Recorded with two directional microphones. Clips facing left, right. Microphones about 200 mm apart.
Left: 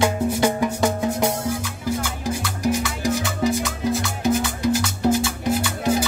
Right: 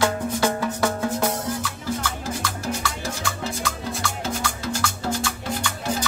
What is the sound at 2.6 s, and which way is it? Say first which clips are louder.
Music: left 10 dB; 15° left (ahead or behind).